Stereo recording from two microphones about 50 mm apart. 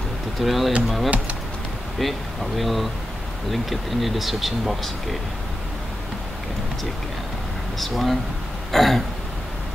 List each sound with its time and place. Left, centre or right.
0.4 s speech: centre
7.8 s speech: centre